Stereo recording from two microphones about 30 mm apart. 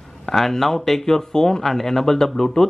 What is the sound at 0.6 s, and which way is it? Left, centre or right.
Speech, centre.